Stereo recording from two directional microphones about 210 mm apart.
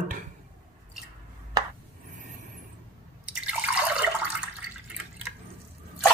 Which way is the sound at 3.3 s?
5° right (ahead or behind).